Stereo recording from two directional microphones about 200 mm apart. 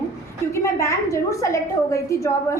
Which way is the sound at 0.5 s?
15° left (ahead or behind).